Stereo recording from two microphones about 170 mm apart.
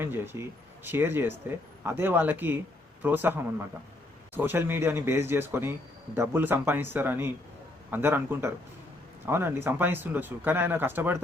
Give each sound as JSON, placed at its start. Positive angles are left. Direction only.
{"t": 0.0, "sound": "speech", "side_deg": -15}